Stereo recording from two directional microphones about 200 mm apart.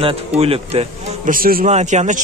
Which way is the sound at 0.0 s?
30° right (ahead or behind).